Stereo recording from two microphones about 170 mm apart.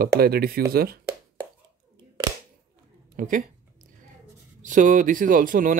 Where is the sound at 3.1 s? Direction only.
50° right (ahead or behind).